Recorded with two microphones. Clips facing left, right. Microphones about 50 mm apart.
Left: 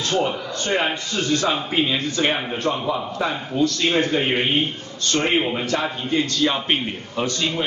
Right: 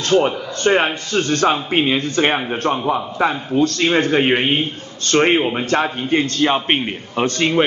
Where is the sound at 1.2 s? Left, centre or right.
Right.